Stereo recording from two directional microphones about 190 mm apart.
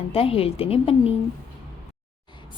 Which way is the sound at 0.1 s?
30° left (ahead or behind).